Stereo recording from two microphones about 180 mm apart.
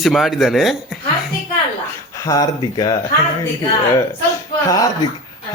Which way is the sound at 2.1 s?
20° left (ahead or behind).